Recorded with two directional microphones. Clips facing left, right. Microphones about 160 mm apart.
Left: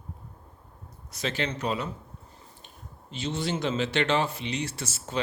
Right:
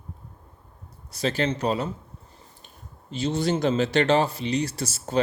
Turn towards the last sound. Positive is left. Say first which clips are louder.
# right 6 dB
turn(degrees=-40)  # may be behind; listen again after turning